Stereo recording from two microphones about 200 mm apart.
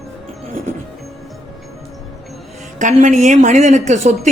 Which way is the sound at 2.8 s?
40° right (ahead or behind).